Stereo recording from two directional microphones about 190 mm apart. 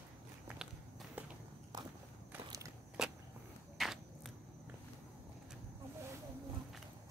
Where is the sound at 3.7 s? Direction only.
Centre (ahead or behind).